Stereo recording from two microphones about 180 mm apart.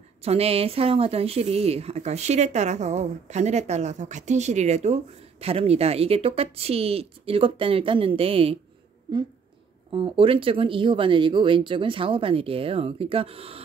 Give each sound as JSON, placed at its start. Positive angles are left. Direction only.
{"t": 0.2, "sound": "speech", "side_deg": -35}
{"t": 9.8, "sound": "speech", "side_deg": -30}